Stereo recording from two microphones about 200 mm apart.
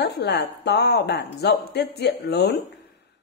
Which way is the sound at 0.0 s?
55° left (ahead or behind).